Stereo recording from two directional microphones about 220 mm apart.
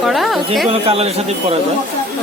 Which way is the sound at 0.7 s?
25° right (ahead or behind).